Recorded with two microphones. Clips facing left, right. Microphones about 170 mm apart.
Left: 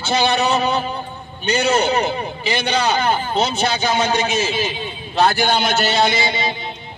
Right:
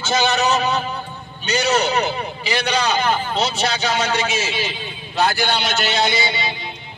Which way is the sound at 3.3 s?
55° left (ahead or behind).